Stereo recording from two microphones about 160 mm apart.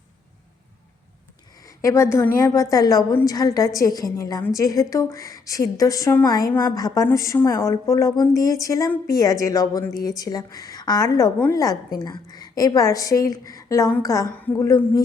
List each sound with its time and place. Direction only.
1.6 s a woman's voice: 20° left (ahead or behind)